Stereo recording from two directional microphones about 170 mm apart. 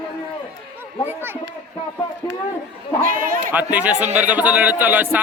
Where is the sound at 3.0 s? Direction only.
55° right (ahead or behind).